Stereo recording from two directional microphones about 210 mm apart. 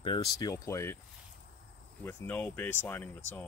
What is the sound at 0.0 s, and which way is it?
Speech, 20° left (ahead or behind).